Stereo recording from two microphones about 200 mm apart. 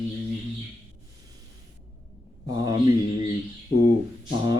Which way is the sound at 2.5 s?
20° right (ahead or behind).